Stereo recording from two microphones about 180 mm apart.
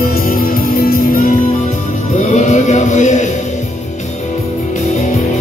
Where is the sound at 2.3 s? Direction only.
40° left (ahead or behind).